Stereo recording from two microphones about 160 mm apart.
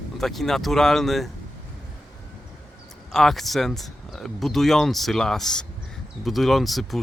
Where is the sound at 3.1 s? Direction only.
Centre (ahead or behind).